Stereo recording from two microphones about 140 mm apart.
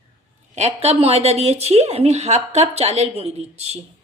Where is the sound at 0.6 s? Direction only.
50° right (ahead or behind).